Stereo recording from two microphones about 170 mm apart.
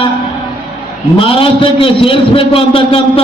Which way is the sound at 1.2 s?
30° left (ahead or behind).